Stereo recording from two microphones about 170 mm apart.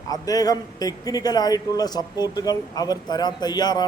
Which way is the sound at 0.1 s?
20° left (ahead or behind).